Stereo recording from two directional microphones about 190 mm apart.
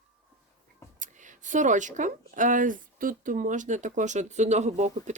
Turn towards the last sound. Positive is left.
turn(degrees=-35)  # may be behind; listen again after turning